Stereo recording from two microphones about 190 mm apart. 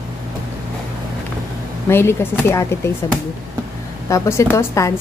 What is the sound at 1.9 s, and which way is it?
Speech, 10° left (ahead or behind).